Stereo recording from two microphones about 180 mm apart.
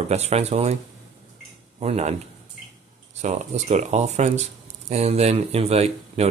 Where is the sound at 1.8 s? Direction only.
35° right (ahead or behind).